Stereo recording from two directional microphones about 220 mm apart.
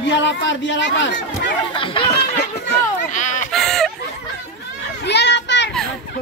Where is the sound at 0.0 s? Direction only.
55° left (ahead or behind).